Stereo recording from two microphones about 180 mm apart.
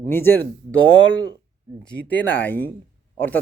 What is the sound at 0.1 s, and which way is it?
Speech, 15° left (ahead or behind).